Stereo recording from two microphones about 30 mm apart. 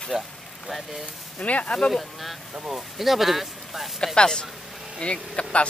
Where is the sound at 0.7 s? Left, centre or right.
Centre.